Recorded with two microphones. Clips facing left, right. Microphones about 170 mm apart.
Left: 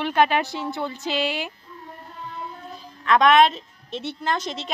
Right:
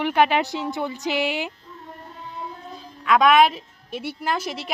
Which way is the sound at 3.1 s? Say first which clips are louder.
Even; 5° right (ahead or behind).